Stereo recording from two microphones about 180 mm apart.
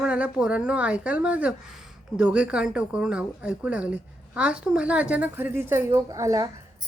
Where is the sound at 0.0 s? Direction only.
5° right (ahead or behind).